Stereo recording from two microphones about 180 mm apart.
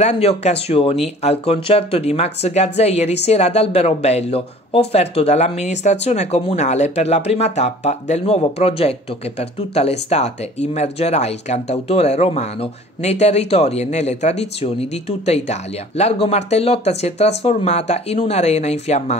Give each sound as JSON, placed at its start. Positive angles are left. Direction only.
{"t": 0.0, "sound": "speech", "side_deg": 35}